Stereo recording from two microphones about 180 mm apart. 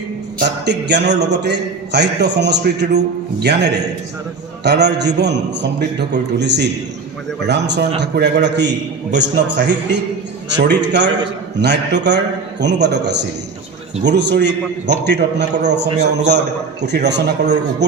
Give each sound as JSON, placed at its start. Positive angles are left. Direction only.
{"t": 0.4, "sound": "a man's voice", "side_deg": -70}